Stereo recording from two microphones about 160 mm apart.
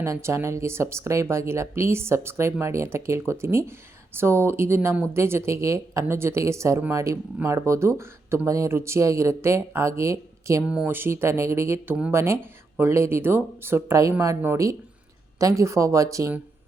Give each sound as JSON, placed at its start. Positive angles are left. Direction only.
{"t": 0.0, "sound": "speech", "side_deg": -15}
{"t": 10.6, "sound": "speech", "side_deg": -5}